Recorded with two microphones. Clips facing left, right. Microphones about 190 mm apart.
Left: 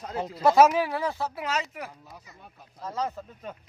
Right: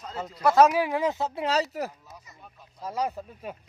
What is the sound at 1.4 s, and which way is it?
Speech, 35° right (ahead or behind).